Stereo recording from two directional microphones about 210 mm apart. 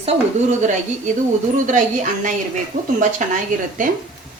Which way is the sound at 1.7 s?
35° right (ahead or behind).